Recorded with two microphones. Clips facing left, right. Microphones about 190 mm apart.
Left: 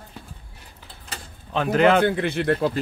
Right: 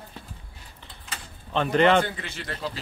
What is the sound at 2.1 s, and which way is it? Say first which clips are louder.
Speech: left 14 dB; 60° left (ahead or behind).